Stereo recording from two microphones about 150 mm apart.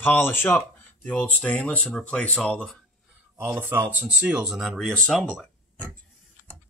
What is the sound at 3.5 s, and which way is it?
Speech, 15° right (ahead or behind).